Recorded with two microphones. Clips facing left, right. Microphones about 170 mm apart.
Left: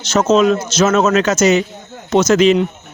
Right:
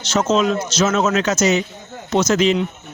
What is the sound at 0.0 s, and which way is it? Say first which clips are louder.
A man's voice: left 5 dB; 50° left (ahead or behind).